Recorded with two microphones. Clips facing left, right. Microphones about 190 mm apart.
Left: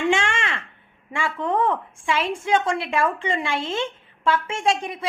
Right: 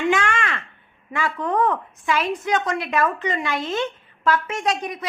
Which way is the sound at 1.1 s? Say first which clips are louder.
Right 1 dB; 25° left (ahead or behind).